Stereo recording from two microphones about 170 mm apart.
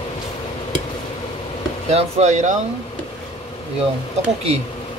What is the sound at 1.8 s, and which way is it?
Speech, 40° right (ahead or behind).